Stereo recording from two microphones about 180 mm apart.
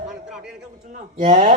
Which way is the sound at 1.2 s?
40° right (ahead or behind).